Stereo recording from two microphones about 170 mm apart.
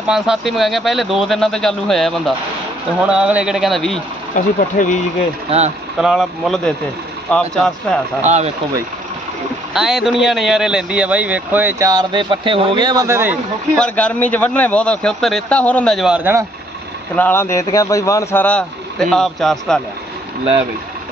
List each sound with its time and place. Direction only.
0.1 s speech: centre (ahead or behind)
4.6 s speech: 45° left (ahead or behind)
5.5 s speech: 35° right (ahead or behind)
5.9 s speech: centre (ahead or behind)
8.2 s speech: 45° right (ahead or behind)
9.8 s speech: centre (ahead or behind)
11.9 s speech: 25° right (ahead or behind)
13.7 s speech: 5° left (ahead or behind)
17.1 s speech: 10° left (ahead or behind)